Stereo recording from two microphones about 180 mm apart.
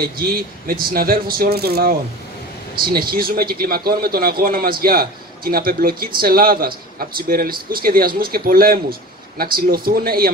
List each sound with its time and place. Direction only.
0.0 s a man's voice: 55° right (ahead or behind)